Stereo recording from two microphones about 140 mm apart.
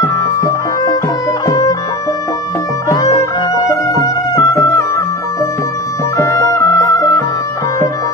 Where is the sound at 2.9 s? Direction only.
20° left (ahead or behind).